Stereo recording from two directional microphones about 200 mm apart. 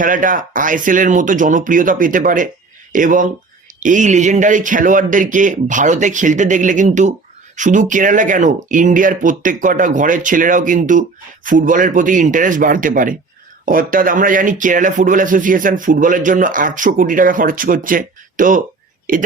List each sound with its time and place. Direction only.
0.0 s a man's voice: 40° right (ahead or behind)